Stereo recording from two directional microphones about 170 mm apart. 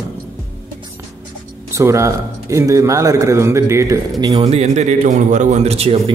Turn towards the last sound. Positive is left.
turn(degrees=-35)  # may be behind; listen again after turning